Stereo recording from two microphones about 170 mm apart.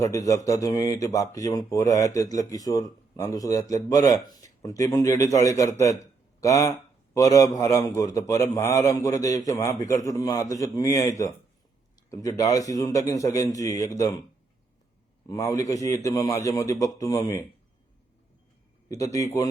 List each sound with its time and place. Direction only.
0.0 s speech: 20° left (ahead or behind)
15.3 s speech: 20° left (ahead or behind)
18.9 s speech: 20° left (ahead or behind)